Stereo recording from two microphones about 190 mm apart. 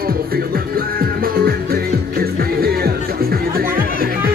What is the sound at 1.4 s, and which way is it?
Music, 50° right (ahead or behind).